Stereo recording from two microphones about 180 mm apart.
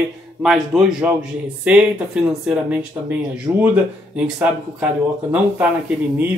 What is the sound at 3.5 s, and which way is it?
Speech, 20° right (ahead or behind).